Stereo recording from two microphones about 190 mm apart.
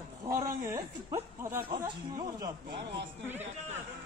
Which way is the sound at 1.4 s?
15° right (ahead or behind).